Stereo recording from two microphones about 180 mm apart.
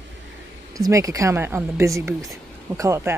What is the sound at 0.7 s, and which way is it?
Speech, 20° right (ahead or behind).